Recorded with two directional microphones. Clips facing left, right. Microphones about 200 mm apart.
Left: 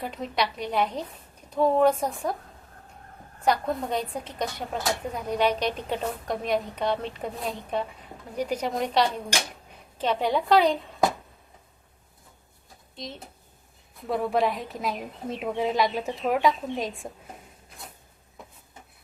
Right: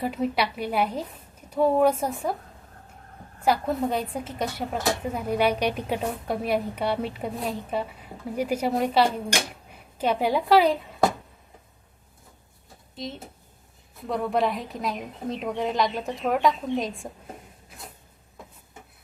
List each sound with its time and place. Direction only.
0.0 s speech: 5° right (ahead or behind)
3.4 s speech: 5° right (ahead or behind)
13.0 s a woman's voice: centre (ahead or behind)